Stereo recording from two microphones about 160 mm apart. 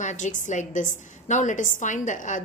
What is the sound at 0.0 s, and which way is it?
A woman's voice, 50° left (ahead or behind).